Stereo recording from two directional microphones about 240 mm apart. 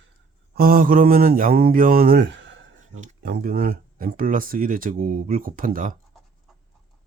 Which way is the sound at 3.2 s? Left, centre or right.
Right.